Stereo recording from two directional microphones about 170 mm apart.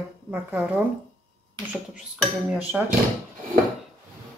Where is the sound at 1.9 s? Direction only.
5° right (ahead or behind).